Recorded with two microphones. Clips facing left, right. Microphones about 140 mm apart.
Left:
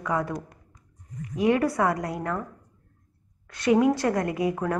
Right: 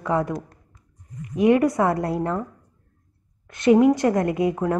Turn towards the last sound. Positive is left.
turn(degrees=-20)  # may be behind; listen again after turning